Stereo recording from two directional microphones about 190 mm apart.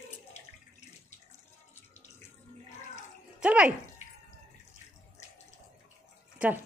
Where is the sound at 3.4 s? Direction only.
5° right (ahead or behind).